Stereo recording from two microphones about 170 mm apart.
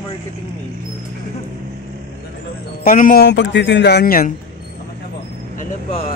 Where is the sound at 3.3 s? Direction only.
90° left; by 4.3 s 60° left (ahead or behind).